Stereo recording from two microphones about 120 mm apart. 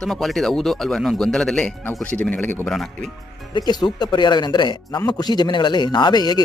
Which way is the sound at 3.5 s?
35° left (ahead or behind).